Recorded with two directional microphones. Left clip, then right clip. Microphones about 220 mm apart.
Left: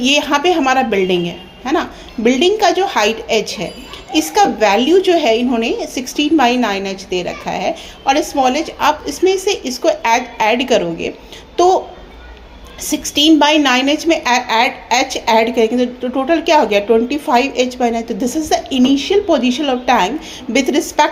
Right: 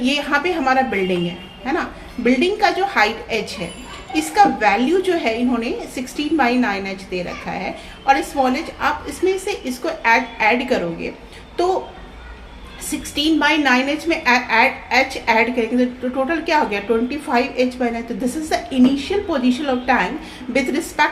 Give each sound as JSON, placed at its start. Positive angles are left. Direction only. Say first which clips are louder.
{"t": 0.0, "sound": "a woman's voice", "louder": "left 5 dB", "side_deg": 30}
{"t": 12.9, "sound": "a woman's voice", "louder": "left 8 dB", "side_deg": 30}